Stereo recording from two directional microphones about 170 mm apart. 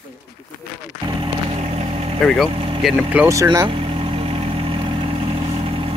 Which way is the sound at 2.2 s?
Centre (ahead or behind).